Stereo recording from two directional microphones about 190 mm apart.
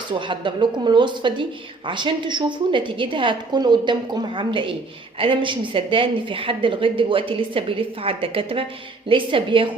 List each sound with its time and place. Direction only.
0.1 s a woman's voice: 25° right (ahead or behind)